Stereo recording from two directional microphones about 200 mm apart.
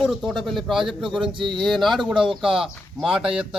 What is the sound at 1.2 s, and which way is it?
Speech, 25° right (ahead or behind).